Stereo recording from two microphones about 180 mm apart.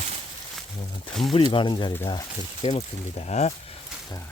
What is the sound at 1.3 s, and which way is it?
Speech, 25° left (ahead or behind).